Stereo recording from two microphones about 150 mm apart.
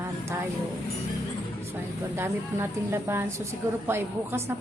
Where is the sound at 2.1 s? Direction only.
15° right (ahead or behind).